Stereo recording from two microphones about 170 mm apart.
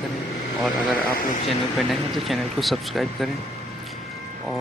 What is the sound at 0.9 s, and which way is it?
Speech, 60° left (ahead or behind).